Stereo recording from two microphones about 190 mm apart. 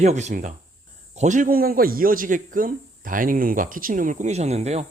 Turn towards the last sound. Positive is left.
turn(degrees=-35)  # may be behind; listen again after turning